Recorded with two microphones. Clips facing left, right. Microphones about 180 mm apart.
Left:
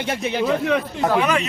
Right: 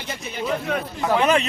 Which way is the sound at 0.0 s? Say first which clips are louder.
Left 7 dB; 80° left.